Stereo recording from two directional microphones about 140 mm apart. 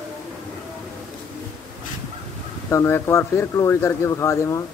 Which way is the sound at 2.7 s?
20° left (ahead or behind).